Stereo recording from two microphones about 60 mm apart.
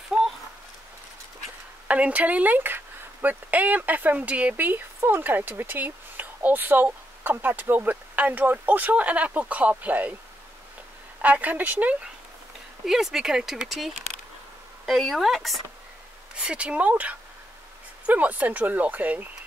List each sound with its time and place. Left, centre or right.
0.1 s a sound: centre
1.9 s speech: right
11.1 s speech: right
12.8 s speech: centre
16.3 s speech: centre